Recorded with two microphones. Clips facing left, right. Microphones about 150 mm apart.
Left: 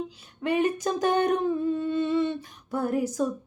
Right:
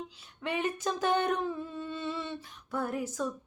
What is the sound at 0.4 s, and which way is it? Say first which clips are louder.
Speech: left 8 dB; 45° left (ahead or behind).